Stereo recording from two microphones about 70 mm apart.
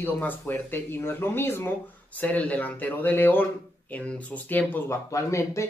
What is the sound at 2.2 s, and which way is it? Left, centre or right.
A man's voice, left.